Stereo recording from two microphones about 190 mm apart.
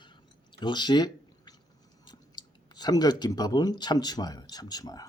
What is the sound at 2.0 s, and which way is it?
Speech, 20° left (ahead or behind).